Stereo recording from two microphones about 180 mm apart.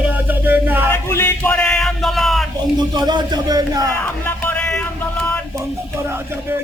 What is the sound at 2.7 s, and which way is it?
Speech, 25° right (ahead or behind).